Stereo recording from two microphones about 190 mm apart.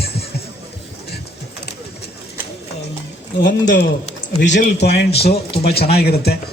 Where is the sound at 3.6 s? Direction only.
65° left (ahead or behind).